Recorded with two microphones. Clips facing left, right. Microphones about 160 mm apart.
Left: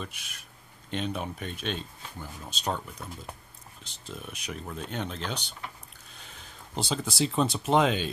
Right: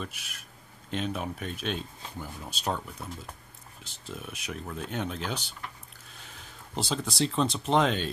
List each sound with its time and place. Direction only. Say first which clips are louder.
0.0 s speech: right 1 dB; centre (ahead or behind)